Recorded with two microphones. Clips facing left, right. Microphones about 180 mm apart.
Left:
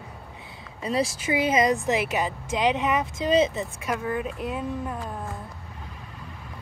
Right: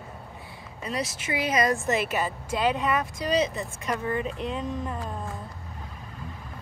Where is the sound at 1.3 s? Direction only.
25° left (ahead or behind).